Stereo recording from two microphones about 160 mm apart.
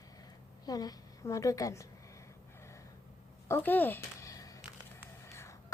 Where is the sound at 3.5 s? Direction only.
10° left (ahead or behind).